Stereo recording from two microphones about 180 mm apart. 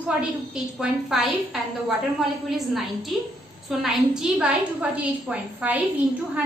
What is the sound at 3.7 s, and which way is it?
A woman's voice, centre (ahead or behind).